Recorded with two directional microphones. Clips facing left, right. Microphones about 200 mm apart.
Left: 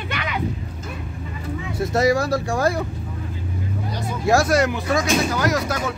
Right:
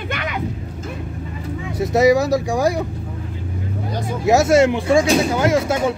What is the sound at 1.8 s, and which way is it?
Speech, 15° right (ahead or behind).